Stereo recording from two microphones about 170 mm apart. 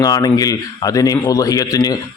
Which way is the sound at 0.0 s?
20° left (ahead or behind).